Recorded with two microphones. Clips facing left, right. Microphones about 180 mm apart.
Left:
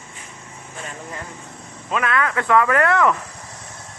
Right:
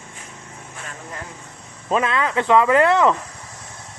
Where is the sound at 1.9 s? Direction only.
25° right (ahead or behind).